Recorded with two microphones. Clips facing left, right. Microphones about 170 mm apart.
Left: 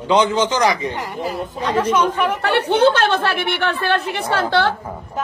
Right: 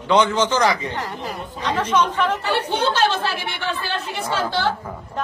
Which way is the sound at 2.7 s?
60° left (ahead or behind).